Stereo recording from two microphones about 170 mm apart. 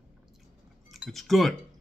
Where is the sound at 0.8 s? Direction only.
Centre (ahead or behind).